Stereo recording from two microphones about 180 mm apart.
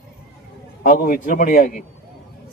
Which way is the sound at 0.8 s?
50° left (ahead or behind).